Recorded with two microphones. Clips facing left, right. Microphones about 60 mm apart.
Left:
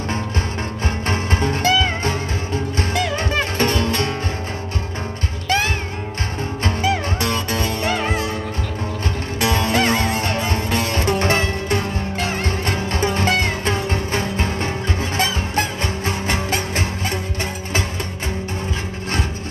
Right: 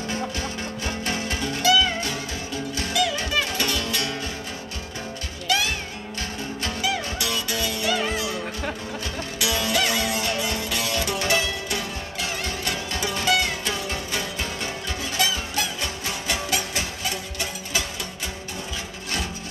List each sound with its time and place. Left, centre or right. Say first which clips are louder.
1.0 s music: left 7 dB; left
6.6 s music: left 6 dB; left
9.4 s music: left 6 dB; left